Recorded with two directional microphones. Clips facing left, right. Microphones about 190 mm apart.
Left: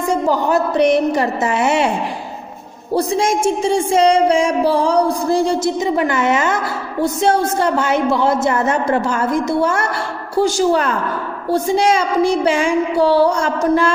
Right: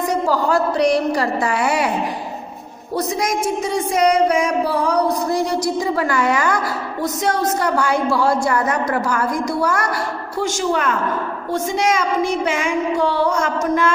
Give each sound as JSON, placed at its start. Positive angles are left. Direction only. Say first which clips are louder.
{"t": 0.1, "sound": "speech", "louder": "left 3 dB", "side_deg": 20}
{"t": 2.9, "sound": "speech", "louder": "left 4 dB", "side_deg": 30}